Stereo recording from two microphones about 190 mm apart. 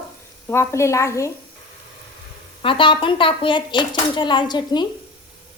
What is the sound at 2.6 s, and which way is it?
Speech, 25° left (ahead or behind).